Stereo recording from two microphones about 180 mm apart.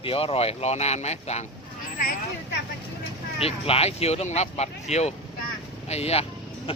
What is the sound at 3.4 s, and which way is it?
Speech, 35° left (ahead or behind).